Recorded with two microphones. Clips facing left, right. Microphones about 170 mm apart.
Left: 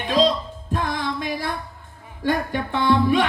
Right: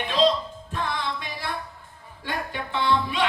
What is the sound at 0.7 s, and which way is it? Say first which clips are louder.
Music: left 4 dB; 45° left (ahead or behind).